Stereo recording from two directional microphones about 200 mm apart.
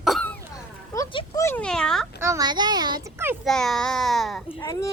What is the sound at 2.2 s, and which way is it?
A child's voice, 15° right (ahead or behind).